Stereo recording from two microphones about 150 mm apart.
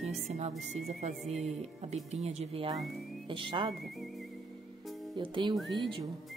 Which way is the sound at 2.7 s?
Centre (ahead or behind).